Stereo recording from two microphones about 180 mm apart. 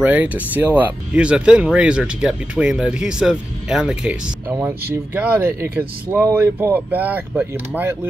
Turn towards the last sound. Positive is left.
turn(degrees=-10)  # may be behind; listen again after turning